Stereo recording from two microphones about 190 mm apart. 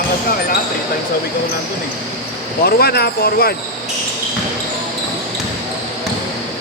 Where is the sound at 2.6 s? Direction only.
55° left (ahead or behind).